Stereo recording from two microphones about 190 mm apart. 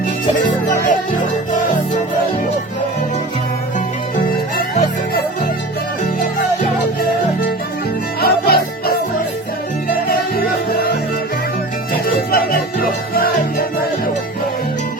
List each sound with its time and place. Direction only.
0.3 s music: 45° left (ahead or behind)
4.5 s music: 50° left (ahead or behind)
8.2 s music: 55° left (ahead or behind)
10.1 s music: 50° left (ahead or behind)
12.0 s music: 50° left (ahead or behind)